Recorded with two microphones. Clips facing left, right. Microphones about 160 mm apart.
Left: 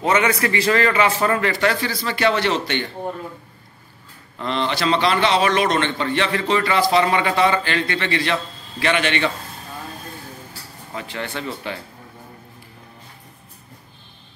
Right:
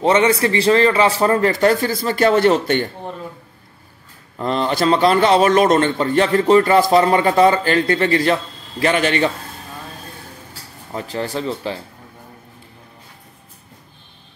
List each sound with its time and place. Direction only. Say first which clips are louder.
0.0 s a man's voice: right 4 dB; 30° right (ahead or behind)
4.4 s a man's voice: right 4 dB; 40° right (ahead or behind)
11.0 s a man's voice: right 5 dB; 35° right (ahead or behind)